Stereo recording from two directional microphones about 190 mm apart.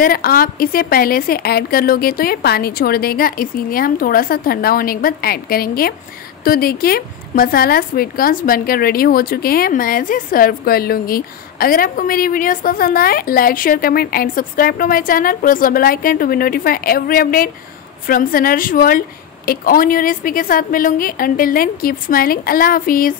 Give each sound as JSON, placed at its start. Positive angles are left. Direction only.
{"t": 0.0, "sound": "speech", "side_deg": 50}